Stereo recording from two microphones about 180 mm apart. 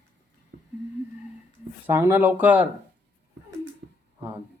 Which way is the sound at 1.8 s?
10° right (ahead or behind).